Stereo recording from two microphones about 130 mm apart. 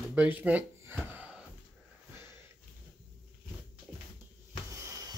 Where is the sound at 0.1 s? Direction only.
10° right (ahead or behind).